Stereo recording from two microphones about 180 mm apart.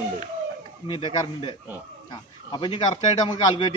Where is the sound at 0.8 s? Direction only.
25° left (ahead or behind).